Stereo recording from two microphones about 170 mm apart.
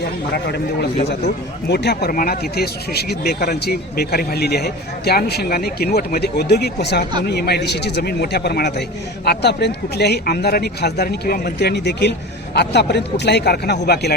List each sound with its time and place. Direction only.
0.3 s speech: 70° left (ahead or behind)